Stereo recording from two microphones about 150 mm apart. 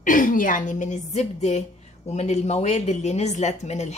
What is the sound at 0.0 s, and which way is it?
A woman's voice, 65° left (ahead or behind).